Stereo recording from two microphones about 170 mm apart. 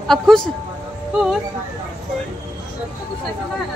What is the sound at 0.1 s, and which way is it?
Speech, centre (ahead or behind).